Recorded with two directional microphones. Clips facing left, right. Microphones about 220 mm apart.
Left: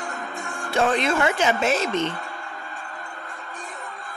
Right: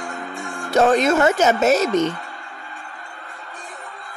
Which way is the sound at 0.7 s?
40° right (ahead or behind).